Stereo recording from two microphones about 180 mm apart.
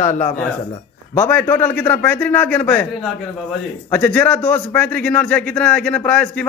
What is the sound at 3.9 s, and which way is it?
A man's voice, 10° left (ahead or behind).